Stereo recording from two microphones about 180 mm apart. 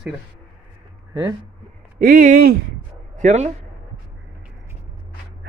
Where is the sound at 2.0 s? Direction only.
50° right (ahead or behind).